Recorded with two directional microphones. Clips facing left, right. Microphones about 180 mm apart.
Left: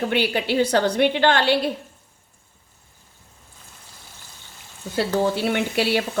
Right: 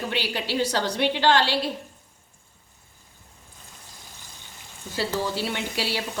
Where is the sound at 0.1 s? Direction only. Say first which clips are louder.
Left 6 dB; 55° left (ahead or behind).